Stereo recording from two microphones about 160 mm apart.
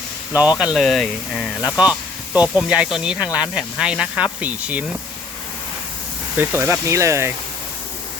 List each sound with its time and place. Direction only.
0.3 s speech: 5° right (ahead or behind)
6.3 s speech: 15° right (ahead or behind)